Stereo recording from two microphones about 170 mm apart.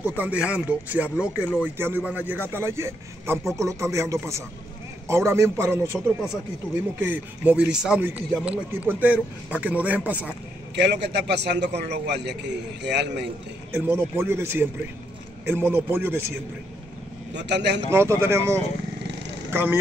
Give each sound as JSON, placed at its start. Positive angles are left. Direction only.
{"t": 0.2, "sound": "speech", "side_deg": -5}
{"t": 1.1, "sound": "speech", "side_deg": 10}
{"t": 1.6, "sound": "speech", "side_deg": -10}
{"t": 5.9, "sound": "speech", "side_deg": 0}
{"t": 10.8, "sound": "a man's voice", "side_deg": -80}
{"t": 13.7, "sound": "speech", "side_deg": -15}
{"t": 17.3, "sound": "a man's voice", "side_deg": -90}
{"t": 18.2, "sound": "speech", "side_deg": -15}